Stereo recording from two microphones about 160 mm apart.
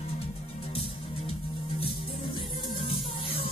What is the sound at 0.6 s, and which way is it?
Music, 35° left (ahead or behind).